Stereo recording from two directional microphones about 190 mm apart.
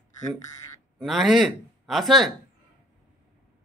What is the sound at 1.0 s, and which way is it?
Speech, centre (ahead or behind).